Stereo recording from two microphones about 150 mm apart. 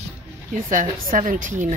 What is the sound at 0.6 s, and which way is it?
A woman's voice, 60° right (ahead or behind).